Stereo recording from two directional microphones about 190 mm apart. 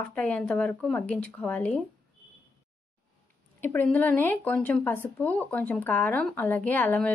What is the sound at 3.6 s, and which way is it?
Speech, 10° left (ahead or behind).